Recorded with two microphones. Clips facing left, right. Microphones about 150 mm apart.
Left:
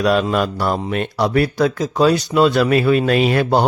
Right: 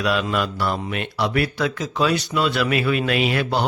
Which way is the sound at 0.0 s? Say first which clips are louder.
Left 6 dB; 40° left (ahead or behind).